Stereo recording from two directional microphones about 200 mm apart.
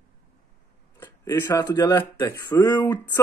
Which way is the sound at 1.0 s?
15° left (ahead or behind).